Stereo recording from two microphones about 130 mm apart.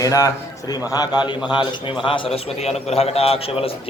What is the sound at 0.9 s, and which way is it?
A man's voice, 30° left (ahead or behind).